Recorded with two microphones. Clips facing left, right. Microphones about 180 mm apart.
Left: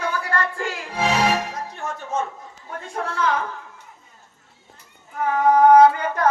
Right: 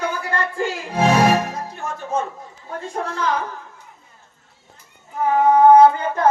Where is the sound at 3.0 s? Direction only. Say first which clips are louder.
Right 1 dB; 30° right (ahead or behind).